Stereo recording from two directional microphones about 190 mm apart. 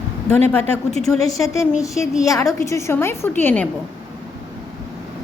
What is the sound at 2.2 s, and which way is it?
A woman's voice, 15° left (ahead or behind).